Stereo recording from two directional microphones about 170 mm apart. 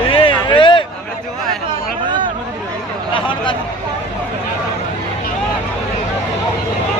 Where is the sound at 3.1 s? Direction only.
30° left (ahead or behind).